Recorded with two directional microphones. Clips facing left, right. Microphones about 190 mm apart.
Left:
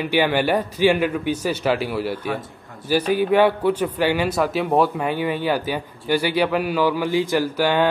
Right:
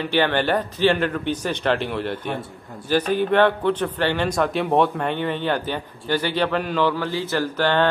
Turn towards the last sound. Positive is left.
turn(degrees=10)  # may be behind; listen again after turning